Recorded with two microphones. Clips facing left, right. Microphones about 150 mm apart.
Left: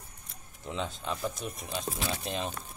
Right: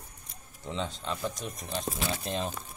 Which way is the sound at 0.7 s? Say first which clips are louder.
Even; 5° left (ahead or behind).